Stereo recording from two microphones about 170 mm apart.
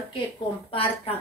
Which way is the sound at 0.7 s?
35° left (ahead or behind).